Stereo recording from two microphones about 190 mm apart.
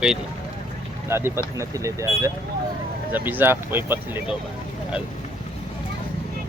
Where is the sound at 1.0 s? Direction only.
15° right (ahead or behind).